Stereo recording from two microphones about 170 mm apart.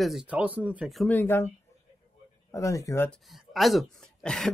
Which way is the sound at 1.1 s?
15° left (ahead or behind).